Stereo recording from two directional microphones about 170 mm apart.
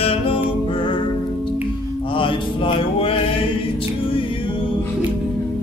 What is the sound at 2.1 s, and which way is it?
Music, 30° left (ahead or behind).